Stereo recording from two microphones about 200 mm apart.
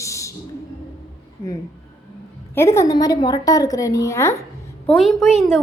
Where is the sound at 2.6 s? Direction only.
15° left (ahead or behind).